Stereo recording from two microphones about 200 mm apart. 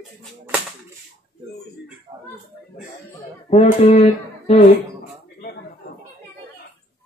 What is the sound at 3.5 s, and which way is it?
Speech, 30° left (ahead or behind).